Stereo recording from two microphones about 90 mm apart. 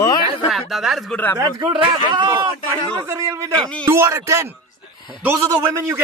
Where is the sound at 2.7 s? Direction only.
35° right (ahead or behind).